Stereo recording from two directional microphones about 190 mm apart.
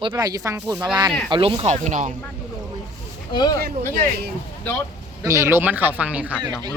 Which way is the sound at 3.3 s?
25° left (ahead or behind).